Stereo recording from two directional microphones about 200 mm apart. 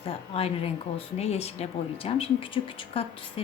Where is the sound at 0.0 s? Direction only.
30° left (ahead or behind).